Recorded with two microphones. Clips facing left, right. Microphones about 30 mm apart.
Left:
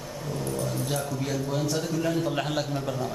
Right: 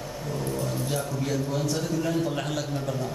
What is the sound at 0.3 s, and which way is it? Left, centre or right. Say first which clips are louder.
Dog: even; centre.